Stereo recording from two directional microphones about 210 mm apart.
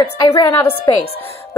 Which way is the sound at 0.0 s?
20° left (ahead or behind).